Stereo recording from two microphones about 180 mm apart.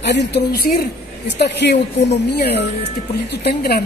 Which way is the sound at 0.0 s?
70° left (ahead or behind).